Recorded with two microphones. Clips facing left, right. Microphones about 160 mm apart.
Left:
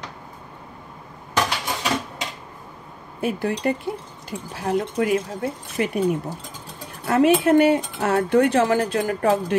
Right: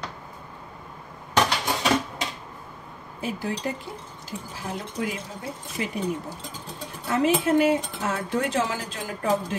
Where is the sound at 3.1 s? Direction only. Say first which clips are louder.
Left 6 dB; 60° left (ahead or behind).